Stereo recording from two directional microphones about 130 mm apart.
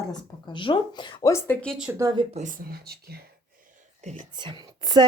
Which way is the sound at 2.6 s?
90° right.